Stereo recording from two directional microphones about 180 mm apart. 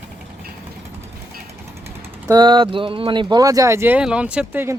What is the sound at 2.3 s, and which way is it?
Speech, 25° right (ahead or behind).